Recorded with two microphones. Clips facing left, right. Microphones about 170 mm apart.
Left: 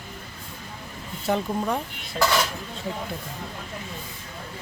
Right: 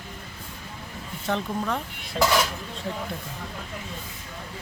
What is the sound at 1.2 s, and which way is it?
Speech, 10° left (ahead or behind).